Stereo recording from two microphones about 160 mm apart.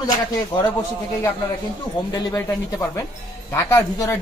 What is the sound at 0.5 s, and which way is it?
Speech, 30° left (ahead or behind).